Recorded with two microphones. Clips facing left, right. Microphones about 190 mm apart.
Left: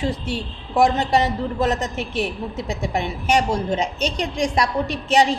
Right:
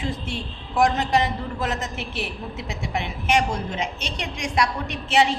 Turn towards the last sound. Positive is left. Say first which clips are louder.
# left 3 dB
turn(degrees=40)  # may be behind; listen again after turning